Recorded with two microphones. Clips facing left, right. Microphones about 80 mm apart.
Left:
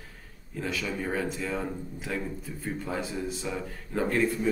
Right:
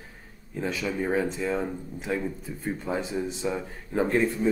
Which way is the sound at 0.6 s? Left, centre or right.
Centre.